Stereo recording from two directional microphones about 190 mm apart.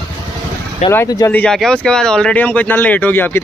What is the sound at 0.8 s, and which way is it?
Speech, 20° left (ahead or behind).